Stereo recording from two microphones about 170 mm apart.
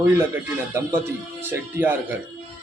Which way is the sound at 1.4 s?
15° right (ahead or behind).